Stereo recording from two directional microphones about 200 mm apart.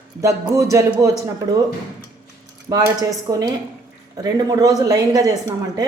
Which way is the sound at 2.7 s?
20° right (ahead or behind).